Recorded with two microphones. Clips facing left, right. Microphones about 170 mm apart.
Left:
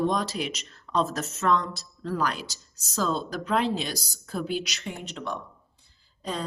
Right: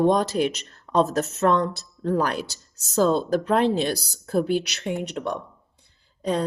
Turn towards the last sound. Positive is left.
turn(degrees=-60)  # may be behind; listen again after turning